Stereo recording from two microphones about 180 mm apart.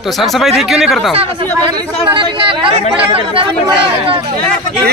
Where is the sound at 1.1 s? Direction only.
30° right (ahead or behind).